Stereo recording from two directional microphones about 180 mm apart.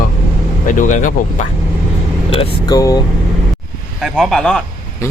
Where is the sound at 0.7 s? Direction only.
45° left (ahead or behind).